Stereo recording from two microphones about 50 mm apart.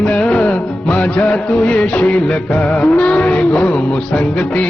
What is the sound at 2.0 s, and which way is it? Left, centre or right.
Music, left.